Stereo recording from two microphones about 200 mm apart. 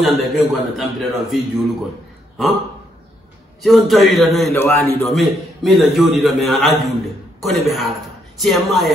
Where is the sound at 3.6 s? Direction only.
Centre (ahead or behind).